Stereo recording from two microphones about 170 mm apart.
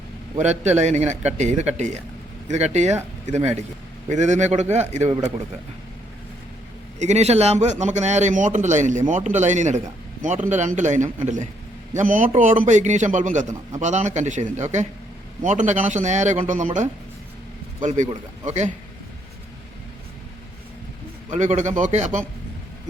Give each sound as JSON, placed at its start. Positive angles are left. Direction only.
{"t": 0.3, "sound": "a man's voice", "side_deg": -40}
{"t": 7.0, "sound": "a man's voice", "side_deg": -40}
{"t": 17.8, "sound": "a man's voice", "side_deg": -45}
{"t": 21.2, "sound": "a man's voice", "side_deg": -45}